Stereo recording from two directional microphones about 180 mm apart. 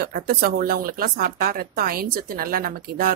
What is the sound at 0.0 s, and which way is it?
Speech, 55° right (ahead or behind).